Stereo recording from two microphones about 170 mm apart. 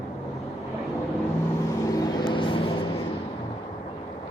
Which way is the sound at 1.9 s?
20° left (ahead or behind).